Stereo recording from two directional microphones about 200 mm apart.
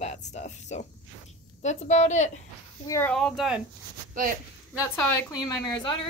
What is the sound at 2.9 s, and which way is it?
Speech, 10° left (ahead or behind).